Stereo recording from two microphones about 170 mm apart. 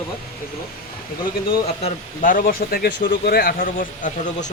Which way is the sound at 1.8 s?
50° left (ahead or behind).